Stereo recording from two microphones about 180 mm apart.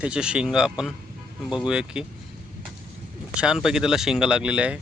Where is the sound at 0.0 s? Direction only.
5° right (ahead or behind).